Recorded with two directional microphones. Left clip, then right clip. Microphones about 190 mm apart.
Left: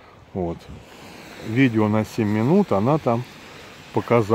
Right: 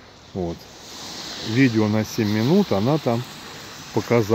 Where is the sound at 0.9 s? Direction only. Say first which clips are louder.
Right 8 dB; 50° left (ahead or behind).